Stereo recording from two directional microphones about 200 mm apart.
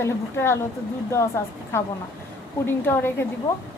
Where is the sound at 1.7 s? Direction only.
10° left (ahead or behind).